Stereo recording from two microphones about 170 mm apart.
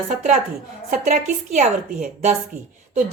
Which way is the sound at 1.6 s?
45° right (ahead or behind).